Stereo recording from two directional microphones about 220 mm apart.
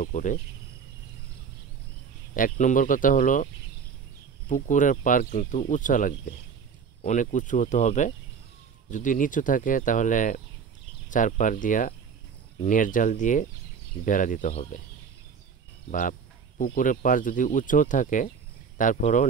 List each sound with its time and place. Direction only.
0.0 s speech: 35° left (ahead or behind)
2.3 s speech: 40° left (ahead or behind)
4.5 s speech: 35° left (ahead or behind)
15.9 s speech: 35° left (ahead or behind)